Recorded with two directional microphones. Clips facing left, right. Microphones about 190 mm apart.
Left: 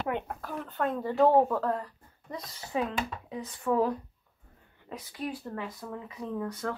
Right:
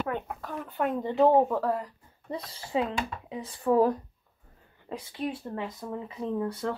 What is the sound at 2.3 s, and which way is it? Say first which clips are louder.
Speech: right 3 dB; 30° right (ahead or behind).